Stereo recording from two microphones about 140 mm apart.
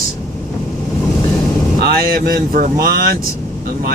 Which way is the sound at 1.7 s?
90° right.